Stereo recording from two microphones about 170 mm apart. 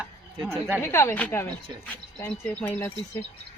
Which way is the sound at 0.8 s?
15° left (ahead or behind).